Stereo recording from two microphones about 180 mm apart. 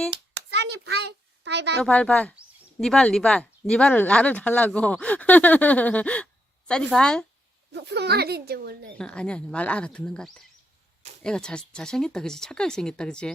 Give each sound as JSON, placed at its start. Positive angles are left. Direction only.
{"t": 0.1, "sound": "a sound", "side_deg": -70}
{"t": 1.8, "sound": "speech", "side_deg": 5}
{"t": 7.7, "sound": "speech", "side_deg": -70}
{"t": 9.0, "sound": "speech", "side_deg": 5}